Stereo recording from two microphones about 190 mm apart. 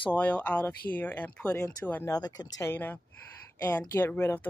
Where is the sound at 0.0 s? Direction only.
10° left (ahead or behind).